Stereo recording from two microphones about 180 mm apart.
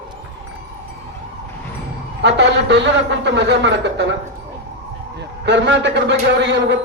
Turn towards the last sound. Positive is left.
turn(degrees=-80)